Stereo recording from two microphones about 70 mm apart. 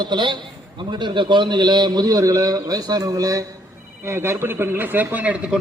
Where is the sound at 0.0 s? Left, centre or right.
Right.